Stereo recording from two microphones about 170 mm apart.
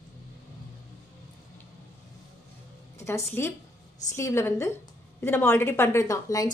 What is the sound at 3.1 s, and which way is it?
A woman's voice, 15° left (ahead or behind).